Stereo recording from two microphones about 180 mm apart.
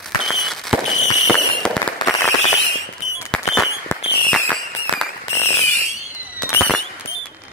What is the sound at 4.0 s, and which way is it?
Fireworks, 30° left (ahead or behind).